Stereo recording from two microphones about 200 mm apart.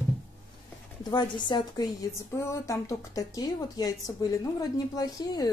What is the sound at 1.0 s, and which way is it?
A woman's voice, 20° left (ahead or behind).